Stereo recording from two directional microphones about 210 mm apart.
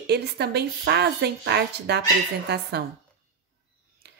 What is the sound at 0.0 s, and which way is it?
Speech, 50° right (ahead or behind).